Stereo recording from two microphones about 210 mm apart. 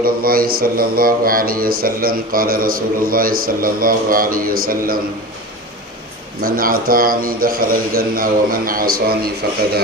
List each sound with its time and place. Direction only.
0.0 s speech: 45° right (ahead or behind)
6.4 s speech: 45° right (ahead or behind)